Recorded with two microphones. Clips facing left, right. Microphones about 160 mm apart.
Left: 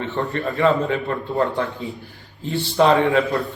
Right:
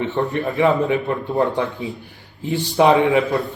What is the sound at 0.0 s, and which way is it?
A man's voice, 20° right (ahead or behind).